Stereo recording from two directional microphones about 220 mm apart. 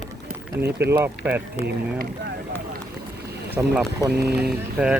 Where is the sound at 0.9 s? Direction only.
10° right (ahead or behind).